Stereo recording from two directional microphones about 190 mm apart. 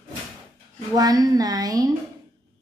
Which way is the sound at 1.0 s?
20° right (ahead or behind).